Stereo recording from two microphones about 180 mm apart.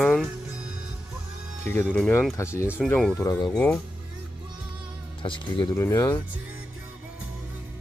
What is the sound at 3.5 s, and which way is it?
Speech, 5° left (ahead or behind).